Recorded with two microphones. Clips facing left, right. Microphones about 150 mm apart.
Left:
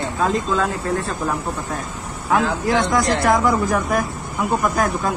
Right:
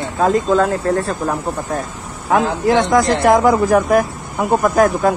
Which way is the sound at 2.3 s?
40° right (ahead or behind).